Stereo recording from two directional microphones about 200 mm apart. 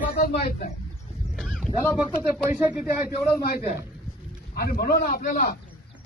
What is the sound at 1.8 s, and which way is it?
Speech, 10° left (ahead or behind).